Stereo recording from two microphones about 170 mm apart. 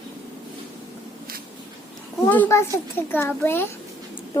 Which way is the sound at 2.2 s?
10° left (ahead or behind).